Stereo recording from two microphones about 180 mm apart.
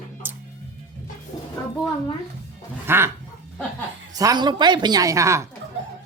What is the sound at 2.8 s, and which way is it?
Speech, 15° right (ahead or behind).